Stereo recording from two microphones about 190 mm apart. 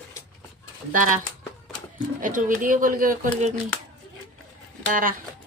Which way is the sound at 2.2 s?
45° right (ahead or behind).